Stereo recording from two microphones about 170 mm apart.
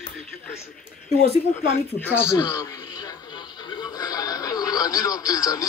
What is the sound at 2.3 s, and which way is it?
Speech, 20° left (ahead or behind).